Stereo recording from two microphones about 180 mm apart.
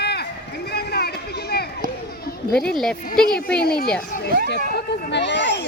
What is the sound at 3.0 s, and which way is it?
Speech, 55° left (ahead or behind).